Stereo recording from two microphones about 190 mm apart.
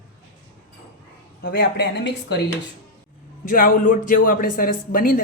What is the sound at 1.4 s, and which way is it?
Speech, 60° left (ahead or behind).